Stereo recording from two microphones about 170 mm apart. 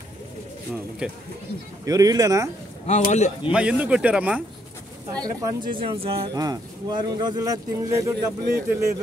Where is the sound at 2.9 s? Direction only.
40° left (ahead or behind).